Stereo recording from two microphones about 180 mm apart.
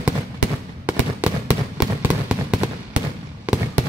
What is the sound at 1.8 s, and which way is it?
Fireworks, 5° right (ahead or behind).